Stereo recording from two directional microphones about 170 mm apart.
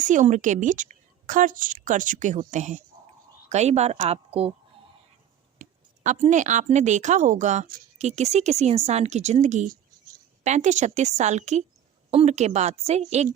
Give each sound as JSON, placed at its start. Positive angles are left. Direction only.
{"t": 0.0, "sound": "a woman's voice", "side_deg": -50}
{"t": 5.5, "sound": "a woman's voice", "side_deg": -45}